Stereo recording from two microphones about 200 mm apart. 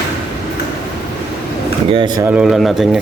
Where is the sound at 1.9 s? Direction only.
20° right (ahead or behind).